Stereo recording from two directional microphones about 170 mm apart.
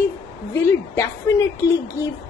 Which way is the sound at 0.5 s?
15° left (ahead or behind).